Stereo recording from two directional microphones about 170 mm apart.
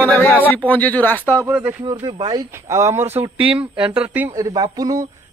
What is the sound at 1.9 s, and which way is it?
Speech, 25° right (ahead or behind).